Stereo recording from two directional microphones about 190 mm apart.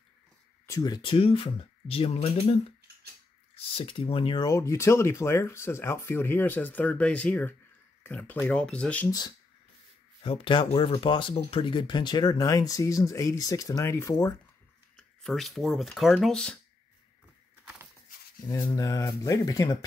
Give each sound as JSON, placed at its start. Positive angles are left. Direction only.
{"t": 0.7, "sound": "speech", "side_deg": 20}
{"t": 3.7, "sound": "speech", "side_deg": 30}
{"t": 10.2, "sound": "speech", "side_deg": 30}
{"t": 15.0, "sound": "speech", "side_deg": 0}
{"t": 18.5, "sound": "speech", "side_deg": 15}